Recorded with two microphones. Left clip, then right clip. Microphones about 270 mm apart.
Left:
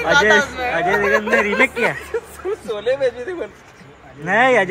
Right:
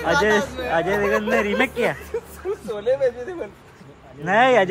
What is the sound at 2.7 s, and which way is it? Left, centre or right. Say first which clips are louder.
Speech: left 1 dB; left.